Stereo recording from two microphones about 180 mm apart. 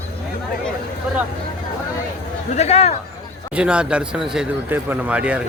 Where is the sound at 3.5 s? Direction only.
5° right (ahead or behind).